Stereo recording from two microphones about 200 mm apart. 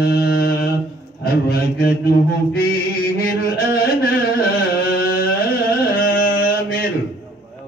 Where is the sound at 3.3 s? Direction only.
50° left (ahead or behind).